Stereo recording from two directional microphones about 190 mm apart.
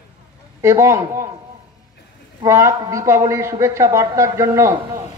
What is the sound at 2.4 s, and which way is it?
A man's voice, 15° right (ahead or behind).